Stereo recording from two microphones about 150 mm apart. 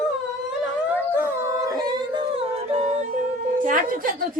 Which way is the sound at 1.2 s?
25° right (ahead or behind).